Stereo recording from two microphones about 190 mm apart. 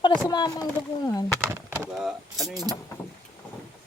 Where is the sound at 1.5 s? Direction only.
10° right (ahead or behind).